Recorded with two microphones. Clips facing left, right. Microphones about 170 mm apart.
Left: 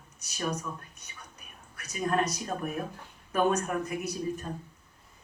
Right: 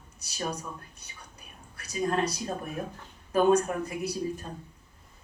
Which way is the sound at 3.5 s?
30° right (ahead or behind).